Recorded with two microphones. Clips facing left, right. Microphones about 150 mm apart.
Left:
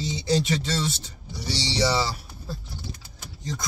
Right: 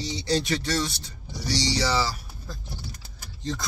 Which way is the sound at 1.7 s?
25° left (ahead or behind).